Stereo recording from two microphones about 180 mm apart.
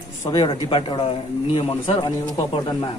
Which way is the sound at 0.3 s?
25° left (ahead or behind).